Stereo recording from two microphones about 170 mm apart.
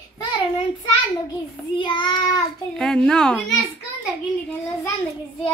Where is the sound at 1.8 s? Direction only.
30° left (ahead or behind).